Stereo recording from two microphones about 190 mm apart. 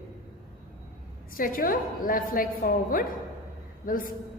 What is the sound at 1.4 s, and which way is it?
A woman's voice, 50° left (ahead or behind).